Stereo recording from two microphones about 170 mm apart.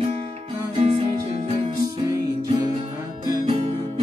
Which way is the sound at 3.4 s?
30° right (ahead or behind).